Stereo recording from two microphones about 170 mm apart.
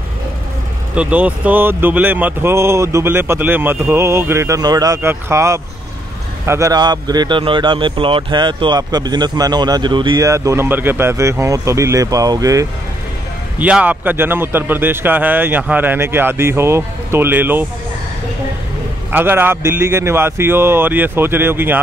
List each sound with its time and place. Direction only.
0.9 s speech: 10° right (ahead or behind)
13.6 s speech: 10° right (ahead or behind)
19.1 s speech: 10° right (ahead or behind)